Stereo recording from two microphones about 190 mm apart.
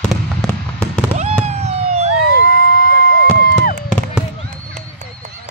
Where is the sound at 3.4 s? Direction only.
50° left (ahead or behind).